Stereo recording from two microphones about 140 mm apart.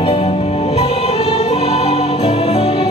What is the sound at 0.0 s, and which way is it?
Music, 45° left (ahead or behind).